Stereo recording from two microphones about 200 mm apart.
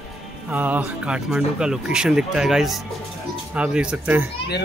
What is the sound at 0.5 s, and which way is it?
Speech, 10° right (ahead or behind).